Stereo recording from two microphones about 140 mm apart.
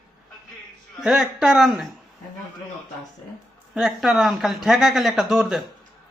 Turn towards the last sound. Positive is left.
turn(degrees=0)  # may be behind; listen again after turning